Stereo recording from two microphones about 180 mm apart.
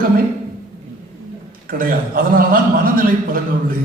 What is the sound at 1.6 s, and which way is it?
A man's voice, 50° right (ahead or behind).